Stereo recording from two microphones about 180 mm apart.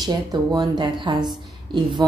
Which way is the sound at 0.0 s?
25° right (ahead or behind).